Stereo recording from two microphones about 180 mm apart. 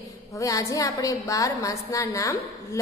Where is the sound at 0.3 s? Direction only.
20° left (ahead or behind).